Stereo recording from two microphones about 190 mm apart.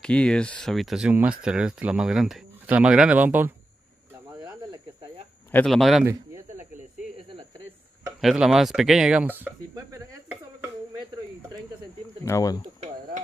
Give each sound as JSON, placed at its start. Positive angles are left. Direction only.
{"t": 0.0, "sound": "speech", "side_deg": 5}
{"t": 5.5, "sound": "speech", "side_deg": 5}
{"t": 7.2, "sound": "a sound", "side_deg": -30}
{"t": 8.2, "sound": "speech", "side_deg": 0}
{"t": 12.3, "sound": "speech", "side_deg": 20}